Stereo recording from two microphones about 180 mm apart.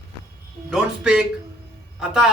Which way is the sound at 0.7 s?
5° right (ahead or behind).